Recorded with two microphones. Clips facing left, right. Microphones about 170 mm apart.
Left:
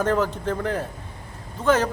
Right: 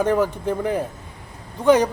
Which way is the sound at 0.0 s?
10° right (ahead or behind).